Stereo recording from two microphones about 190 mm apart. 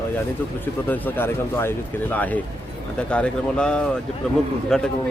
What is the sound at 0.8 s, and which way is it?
A man's voice, 10° left (ahead or behind).